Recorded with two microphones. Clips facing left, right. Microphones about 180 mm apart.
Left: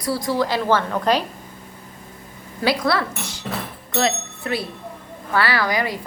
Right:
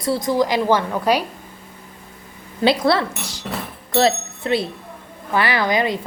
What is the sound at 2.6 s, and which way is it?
A woman's voice, 25° right (ahead or behind).